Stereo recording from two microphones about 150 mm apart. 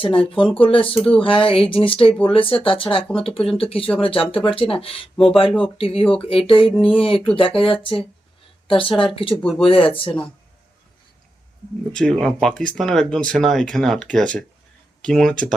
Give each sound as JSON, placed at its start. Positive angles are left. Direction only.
{"t": 0.0, "sound": "speech", "side_deg": 35}
{"t": 5.1, "sound": "speech", "side_deg": 0}
{"t": 5.7, "sound": "a woman's voice", "side_deg": 40}
{"t": 11.9, "sound": "speech", "side_deg": 5}